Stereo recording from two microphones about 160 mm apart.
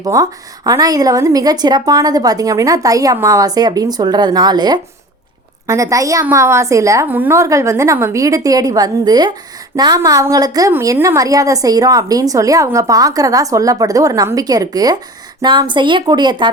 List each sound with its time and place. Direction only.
0.0 s a woman's voice: 20° right (ahead or behind)